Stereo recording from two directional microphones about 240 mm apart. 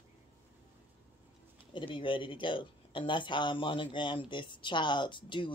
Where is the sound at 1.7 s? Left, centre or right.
Left.